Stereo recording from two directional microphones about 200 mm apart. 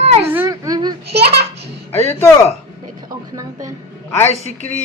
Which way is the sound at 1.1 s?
55° right (ahead or behind).